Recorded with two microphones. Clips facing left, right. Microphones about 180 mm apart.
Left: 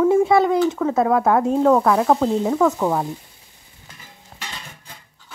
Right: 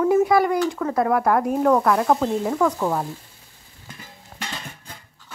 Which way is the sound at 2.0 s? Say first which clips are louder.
Left 2 dB; 5° left (ahead or behind).